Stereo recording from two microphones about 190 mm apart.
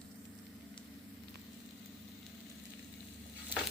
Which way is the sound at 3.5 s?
10° right (ahead or behind).